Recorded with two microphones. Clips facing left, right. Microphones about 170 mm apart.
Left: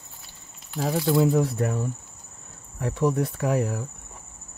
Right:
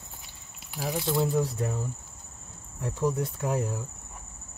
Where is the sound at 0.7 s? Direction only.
85° left.